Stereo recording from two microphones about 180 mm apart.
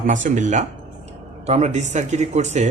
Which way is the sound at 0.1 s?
45° right (ahead or behind).